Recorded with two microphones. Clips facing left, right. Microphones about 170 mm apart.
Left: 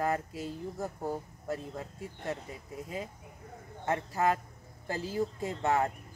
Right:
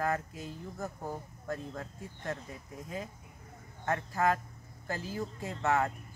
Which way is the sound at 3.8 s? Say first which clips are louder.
Left 1 dB; 25° left (ahead or behind).